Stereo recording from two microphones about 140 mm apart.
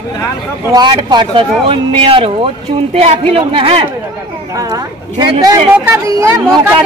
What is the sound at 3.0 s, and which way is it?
Speech, 50° right (ahead or behind).